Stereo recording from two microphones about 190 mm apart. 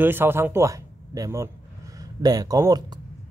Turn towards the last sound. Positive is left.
turn(degrees=-20)  # may be behind; listen again after turning